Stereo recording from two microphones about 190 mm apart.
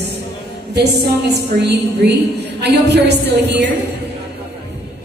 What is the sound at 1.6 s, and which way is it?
A woman's voice, 60° right (ahead or behind).